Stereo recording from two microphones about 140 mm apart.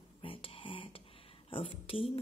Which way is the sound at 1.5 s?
40° left (ahead or behind).